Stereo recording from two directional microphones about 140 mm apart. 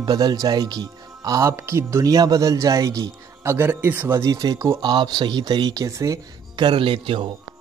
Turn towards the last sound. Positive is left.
turn(degrees=-40)  # may be behind; listen again after turning